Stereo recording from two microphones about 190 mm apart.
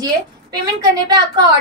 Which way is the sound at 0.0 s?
20° right (ahead or behind).